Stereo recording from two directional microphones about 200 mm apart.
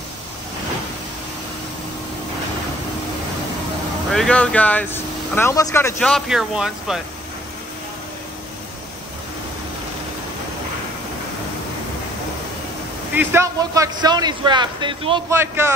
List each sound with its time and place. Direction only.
4.1 s speech: 5° left (ahead or behind)
13.1 s a man's voice: 10° right (ahead or behind)
15.3 s a man's voice: 10° right (ahead or behind)